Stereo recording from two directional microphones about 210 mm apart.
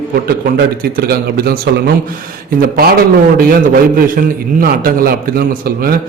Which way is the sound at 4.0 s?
45° right (ahead or behind).